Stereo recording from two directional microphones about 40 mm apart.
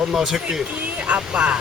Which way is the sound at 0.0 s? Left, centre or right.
Centre.